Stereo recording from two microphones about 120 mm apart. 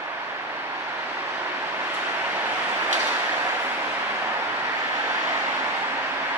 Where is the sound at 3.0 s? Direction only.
20° right (ahead or behind).